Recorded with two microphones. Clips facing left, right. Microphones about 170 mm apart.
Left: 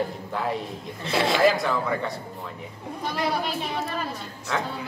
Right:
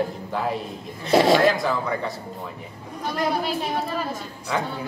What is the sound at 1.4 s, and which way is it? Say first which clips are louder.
Speech: even; centre (ahead or behind).